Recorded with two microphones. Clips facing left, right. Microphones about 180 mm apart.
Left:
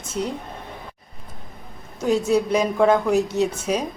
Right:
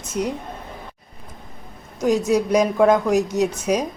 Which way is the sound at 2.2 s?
10° right (ahead or behind).